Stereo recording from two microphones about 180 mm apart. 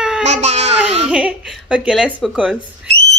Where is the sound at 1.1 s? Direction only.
5° right (ahead or behind).